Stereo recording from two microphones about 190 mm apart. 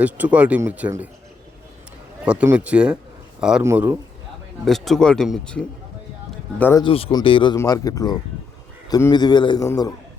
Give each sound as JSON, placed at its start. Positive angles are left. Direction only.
{"t": 0.0, "sound": "speech", "side_deg": -5}
{"t": 2.2, "sound": "speech", "side_deg": -5}
{"t": 4.6, "sound": "speech", "side_deg": 0}
{"t": 6.8, "sound": "a man's voice", "side_deg": 30}